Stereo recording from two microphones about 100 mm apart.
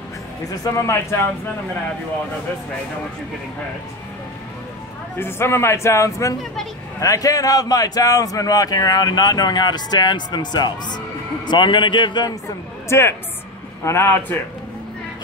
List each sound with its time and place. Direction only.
0.5 s a man's voice: 30° left (ahead or behind)
5.2 s a man's voice: 25° left (ahead or behind); by 12.3 s 50° left (ahead or behind)
12.8 s a woman's voice: 25° left (ahead or behind)